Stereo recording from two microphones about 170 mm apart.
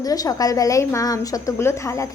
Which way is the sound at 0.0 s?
20° left (ahead or behind).